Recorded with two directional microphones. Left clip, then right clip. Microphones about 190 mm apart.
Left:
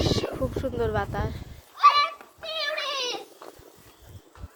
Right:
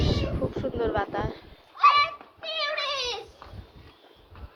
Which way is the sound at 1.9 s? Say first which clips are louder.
Right 1 dB; 50° left (ahead or behind).